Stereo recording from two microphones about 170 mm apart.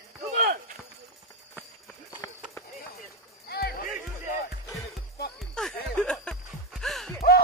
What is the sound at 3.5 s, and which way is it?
Music, 65° left (ahead or behind).